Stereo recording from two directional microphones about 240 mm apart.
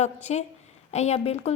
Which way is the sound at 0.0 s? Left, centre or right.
Left.